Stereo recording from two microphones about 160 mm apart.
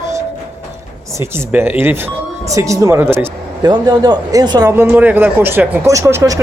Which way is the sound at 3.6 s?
25° right (ahead or behind).